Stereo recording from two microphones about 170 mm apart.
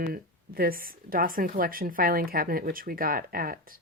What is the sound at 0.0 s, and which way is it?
Speech, 60° right (ahead or behind).